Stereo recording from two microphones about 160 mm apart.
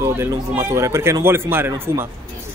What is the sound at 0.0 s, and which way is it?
Speech, 15° right (ahead or behind).